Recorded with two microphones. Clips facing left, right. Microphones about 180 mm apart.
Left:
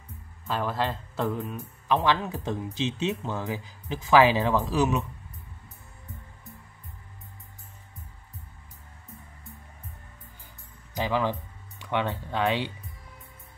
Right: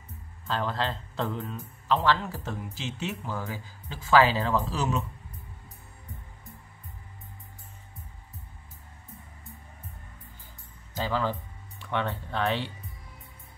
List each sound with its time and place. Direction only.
0.5 s speech: 10° left (ahead or behind)
11.0 s speech: 15° left (ahead or behind)